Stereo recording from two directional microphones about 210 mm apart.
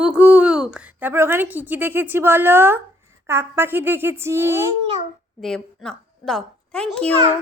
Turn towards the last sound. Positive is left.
turn(degrees=5)  # may be behind; listen again after turning